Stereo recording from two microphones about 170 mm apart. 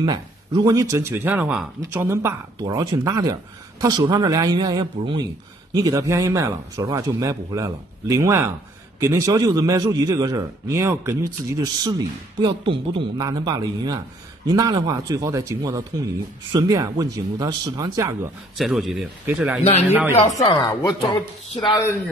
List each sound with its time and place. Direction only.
0.0 s speech: 25° right (ahead or behind)
18.6 s speech: centre (ahead or behind)
20.3 s speech: 20° left (ahead or behind)